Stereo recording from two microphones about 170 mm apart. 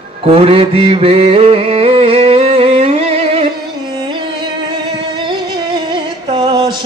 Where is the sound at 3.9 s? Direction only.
25° right (ahead or behind).